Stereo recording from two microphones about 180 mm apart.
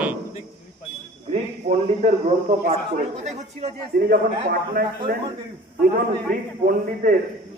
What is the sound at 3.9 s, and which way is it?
A man's voice, 55° right (ahead or behind).